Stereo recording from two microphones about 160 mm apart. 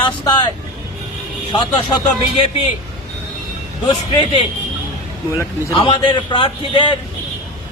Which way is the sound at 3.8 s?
30° left (ahead or behind).